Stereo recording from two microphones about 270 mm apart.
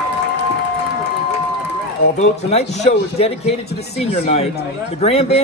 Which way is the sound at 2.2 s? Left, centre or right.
Left.